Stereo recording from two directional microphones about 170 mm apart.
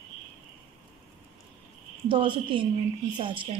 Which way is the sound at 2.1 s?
30° right (ahead or behind).